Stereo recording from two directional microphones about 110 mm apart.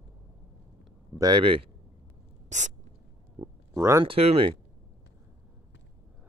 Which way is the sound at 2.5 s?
90° right.